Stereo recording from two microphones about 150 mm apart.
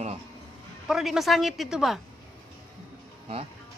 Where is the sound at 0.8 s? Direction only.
Centre (ahead or behind).